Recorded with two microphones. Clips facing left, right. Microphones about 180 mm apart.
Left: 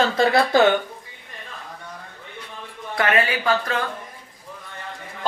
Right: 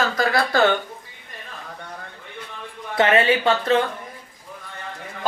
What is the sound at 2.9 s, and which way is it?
Speech, 25° right (ahead or behind).